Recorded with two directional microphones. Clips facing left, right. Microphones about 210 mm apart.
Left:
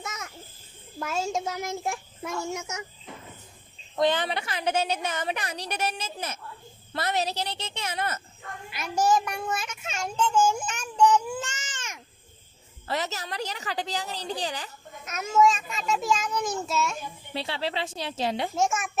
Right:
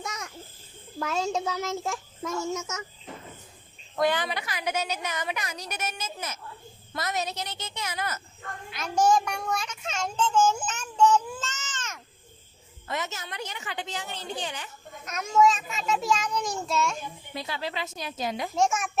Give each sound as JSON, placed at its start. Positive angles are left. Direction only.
{"t": 0.0, "sound": "a sound", "side_deg": 5}
{"t": 0.9, "sound": "a child's voice", "side_deg": 5}
{"t": 3.9, "sound": "a woman's voice", "side_deg": 20}
{"t": 8.7, "sound": "a child's voice", "side_deg": 5}
{"t": 12.9, "sound": "a woman's voice", "side_deg": 35}
{"t": 15.0, "sound": "a child's voice", "side_deg": 5}
{"t": 17.3, "sound": "a woman's voice", "side_deg": 30}
{"t": 18.5, "sound": "a child's voice", "side_deg": 0}